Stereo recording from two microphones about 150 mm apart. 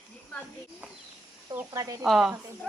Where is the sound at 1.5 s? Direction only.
20° right (ahead or behind).